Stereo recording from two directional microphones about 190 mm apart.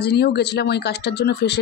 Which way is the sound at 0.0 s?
60° left (ahead or behind).